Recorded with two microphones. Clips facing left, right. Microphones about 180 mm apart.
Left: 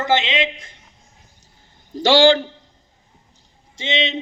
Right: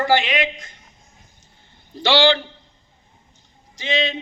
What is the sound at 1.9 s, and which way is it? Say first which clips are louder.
Speech: left 4 dB; 45° left (ahead or behind).